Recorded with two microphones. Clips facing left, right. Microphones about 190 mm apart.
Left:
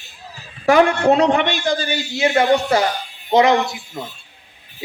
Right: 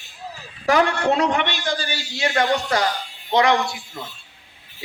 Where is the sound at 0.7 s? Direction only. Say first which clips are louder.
Left 5 dB; 25° left (ahead or behind).